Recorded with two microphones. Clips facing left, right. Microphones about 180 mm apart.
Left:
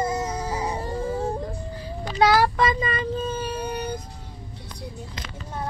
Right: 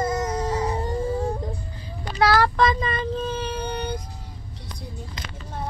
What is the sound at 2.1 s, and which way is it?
Child singing, 15° left (ahead or behind).